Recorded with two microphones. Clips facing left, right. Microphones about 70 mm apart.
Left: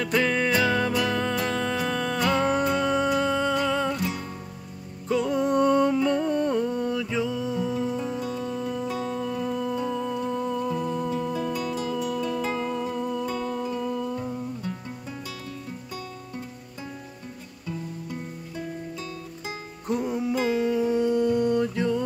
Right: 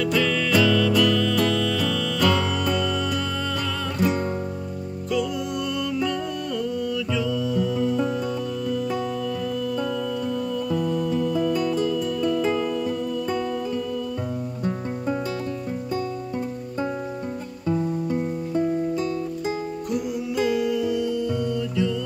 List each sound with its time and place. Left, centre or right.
0.0 s music: left
5.1 s music: left
14.6 s music: right
19.9 s music: left